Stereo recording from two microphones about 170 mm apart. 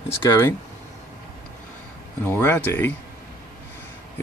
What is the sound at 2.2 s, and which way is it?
Speech, 10° left (ahead or behind).